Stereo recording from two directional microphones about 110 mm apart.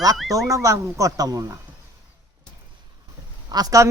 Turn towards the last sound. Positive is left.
turn(degrees=-35)  # may be behind; listen again after turning